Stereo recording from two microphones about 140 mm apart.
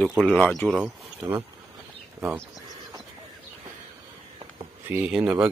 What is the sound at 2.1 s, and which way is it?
Speech, 20° right (ahead or behind).